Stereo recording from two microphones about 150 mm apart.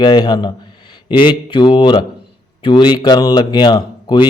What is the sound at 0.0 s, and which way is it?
A man's voice, 30° left (ahead or behind).